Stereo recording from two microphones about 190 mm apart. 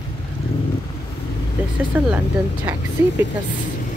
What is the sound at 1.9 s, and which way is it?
Speech, 10° right (ahead or behind).